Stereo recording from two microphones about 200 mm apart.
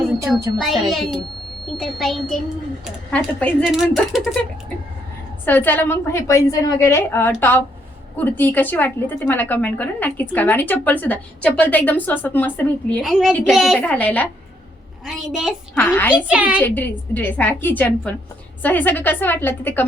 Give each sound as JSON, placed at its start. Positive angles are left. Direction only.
{"t": 0.3, "sound": "a child's voice", "side_deg": -15}
{"t": 0.6, "sound": "a woman's voice", "side_deg": 0}
{"t": 5.5, "sound": "a woman's voice", "side_deg": 10}
{"t": 16.2, "sound": "a child's voice", "side_deg": -5}
{"t": 16.6, "sound": "a woman's voice", "side_deg": 10}